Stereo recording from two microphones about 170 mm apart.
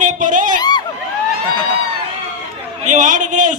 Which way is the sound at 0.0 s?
50° right (ahead or behind).